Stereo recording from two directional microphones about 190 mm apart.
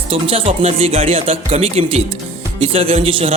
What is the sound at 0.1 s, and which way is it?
Speech, 30° right (ahead or behind).